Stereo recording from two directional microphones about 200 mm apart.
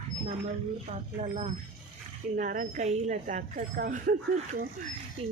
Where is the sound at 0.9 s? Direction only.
30° right (ahead or behind).